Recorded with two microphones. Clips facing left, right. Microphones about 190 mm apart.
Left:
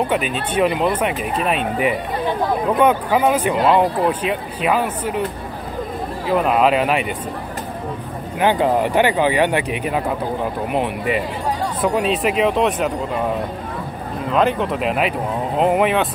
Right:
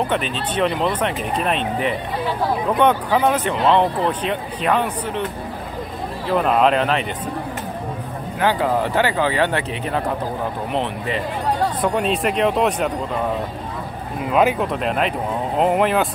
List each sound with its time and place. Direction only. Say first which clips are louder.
0.1 s speech: left 2 dB; 10° left (ahead or behind)
6.2 s speech: left 1 dB; 5° left (ahead or behind)
8.4 s speech: left 3 dB; 20° left (ahead or behind); by 12.9 s centre (ahead or behind)
14.3 s speech: even; 5° right (ahead or behind)